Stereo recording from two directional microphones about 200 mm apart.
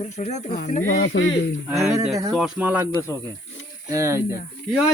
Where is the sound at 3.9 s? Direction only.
15° right (ahead or behind).